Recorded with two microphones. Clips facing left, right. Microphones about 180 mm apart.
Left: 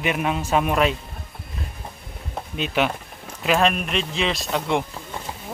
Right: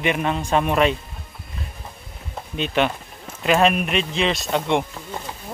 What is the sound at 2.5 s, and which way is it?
Speech, 5° left (ahead or behind).